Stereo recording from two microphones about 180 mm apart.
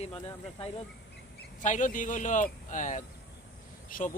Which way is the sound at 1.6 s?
45° left (ahead or behind).